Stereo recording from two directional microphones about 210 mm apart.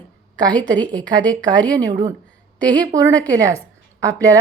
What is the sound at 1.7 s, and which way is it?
Speech, 20° right (ahead or behind).